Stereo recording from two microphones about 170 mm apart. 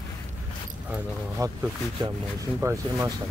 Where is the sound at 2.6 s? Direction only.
15° right (ahead or behind).